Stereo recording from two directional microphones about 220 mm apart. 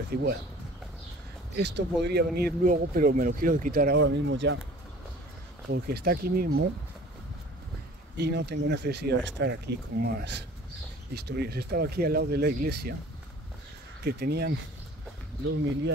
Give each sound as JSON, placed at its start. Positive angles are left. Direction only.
{"t": 0.1, "sound": "speech", "side_deg": -45}
{"t": 1.5, "sound": "speech", "side_deg": -50}
{"t": 5.7, "sound": "speech", "side_deg": -45}
{"t": 8.2, "sound": "speech", "side_deg": -50}
{"t": 14.0, "sound": "speech", "side_deg": -45}